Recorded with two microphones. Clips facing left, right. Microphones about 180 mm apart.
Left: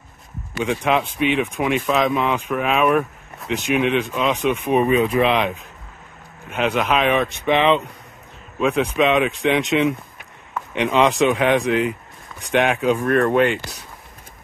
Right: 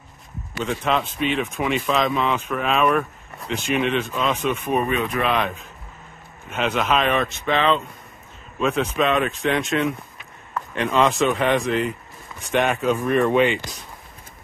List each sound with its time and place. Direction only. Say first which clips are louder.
0.7 s speech: left 3 dB; 15° left (ahead or behind)
6.5 s speech: left 2 dB; 10° left (ahead or behind)
9.6 s speech: left 4 dB; centre (ahead or behind)
10.7 s speech: left 2 dB; 15° left (ahead or behind)
13.0 s speech: left 1 dB; 10° right (ahead or behind)